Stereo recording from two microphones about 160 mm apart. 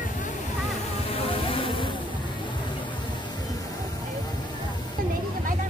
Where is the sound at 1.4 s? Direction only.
35° left (ahead or behind).